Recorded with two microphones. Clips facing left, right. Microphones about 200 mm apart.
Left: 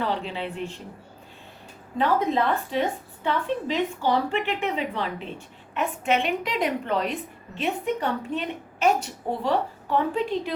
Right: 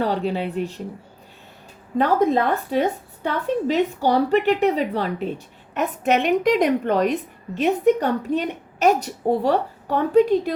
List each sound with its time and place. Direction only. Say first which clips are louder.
0.0 s a woman's voice: right 6 dB; 40° right (ahead or behind)
2.0 s a woman's voice: right 5 dB; 45° right (ahead or behind)